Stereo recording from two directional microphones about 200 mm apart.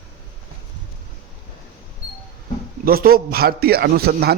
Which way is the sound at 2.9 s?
50° right (ahead or behind).